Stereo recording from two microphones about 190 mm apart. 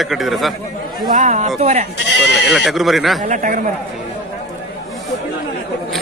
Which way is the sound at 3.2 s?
45° right (ahead or behind).